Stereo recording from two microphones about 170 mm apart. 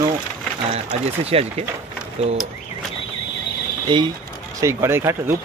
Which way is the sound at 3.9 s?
30° right (ahead or behind).